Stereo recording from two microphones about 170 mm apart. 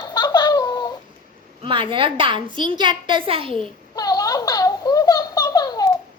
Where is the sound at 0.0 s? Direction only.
25° left (ahead or behind).